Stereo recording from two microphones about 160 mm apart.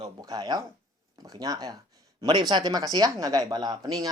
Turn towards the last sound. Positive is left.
turn(degrees=-25)  # may be behind; listen again after turning